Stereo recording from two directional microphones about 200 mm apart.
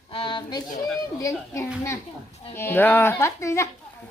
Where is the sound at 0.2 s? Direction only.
25° left (ahead or behind).